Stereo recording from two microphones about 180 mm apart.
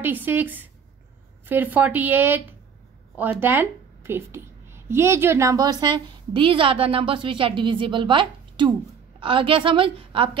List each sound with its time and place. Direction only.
0.0 s a woman's voice: 10° right (ahead or behind); by 10.4 s 30° right (ahead or behind)